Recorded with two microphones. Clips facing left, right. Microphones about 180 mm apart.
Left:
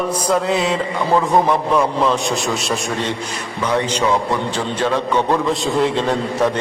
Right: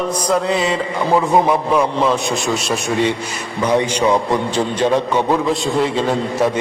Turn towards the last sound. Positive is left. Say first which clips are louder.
# even
turn(degrees=0)  # may be behind; listen again after turning